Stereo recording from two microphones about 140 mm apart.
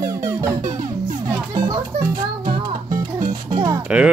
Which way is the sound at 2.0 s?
80° right.